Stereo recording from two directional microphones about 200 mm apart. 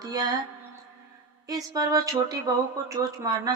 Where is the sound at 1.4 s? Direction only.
20° right (ahead or behind).